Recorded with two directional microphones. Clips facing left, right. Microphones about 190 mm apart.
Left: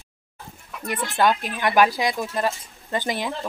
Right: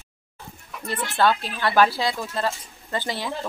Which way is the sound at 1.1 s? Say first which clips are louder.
Even; 15° left (ahead or behind).